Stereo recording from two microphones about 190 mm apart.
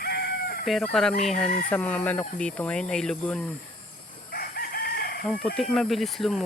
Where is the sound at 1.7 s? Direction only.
5° left (ahead or behind).